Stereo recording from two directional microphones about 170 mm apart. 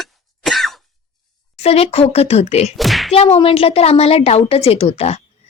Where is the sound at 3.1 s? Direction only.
35° left (ahead or behind).